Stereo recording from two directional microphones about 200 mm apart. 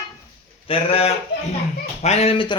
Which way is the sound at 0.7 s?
30° left (ahead or behind).